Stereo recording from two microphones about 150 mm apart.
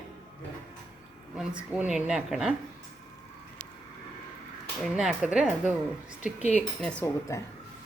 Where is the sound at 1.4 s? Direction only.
10° right (ahead or behind).